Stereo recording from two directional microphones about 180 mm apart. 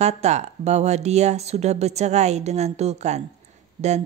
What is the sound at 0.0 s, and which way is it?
A woman's voice, 40° right (ahead or behind).